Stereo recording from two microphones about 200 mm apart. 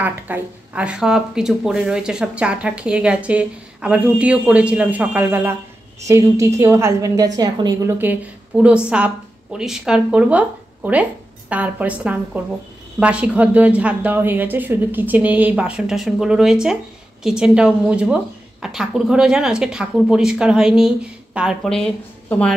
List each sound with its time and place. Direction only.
0.0 s a woman's voice: 10° right (ahead or behind)